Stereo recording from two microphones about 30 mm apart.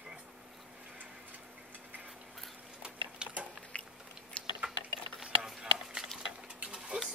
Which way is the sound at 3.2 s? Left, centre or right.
Right.